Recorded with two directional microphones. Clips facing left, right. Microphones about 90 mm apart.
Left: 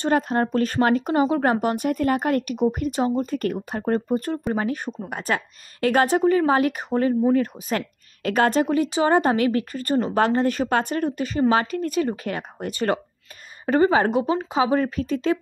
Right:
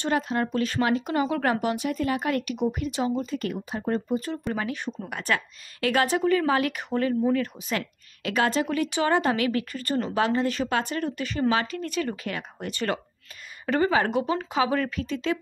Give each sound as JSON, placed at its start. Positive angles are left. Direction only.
{"t": 0.0, "sound": "speech", "side_deg": 40}
{"t": 1.2, "sound": "speech", "side_deg": 30}
{"t": 8.2, "sound": "a woman's voice", "side_deg": 45}
{"t": 8.6, "sound": "speech", "side_deg": 35}
{"t": 12.0, "sound": "speech", "side_deg": 30}